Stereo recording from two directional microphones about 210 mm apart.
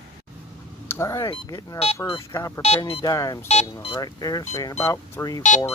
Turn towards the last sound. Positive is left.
turn(degrees=15)  # may be behind; listen again after turning